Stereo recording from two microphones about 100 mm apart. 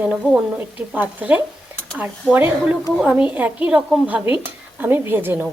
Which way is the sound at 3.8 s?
5° right (ahead or behind).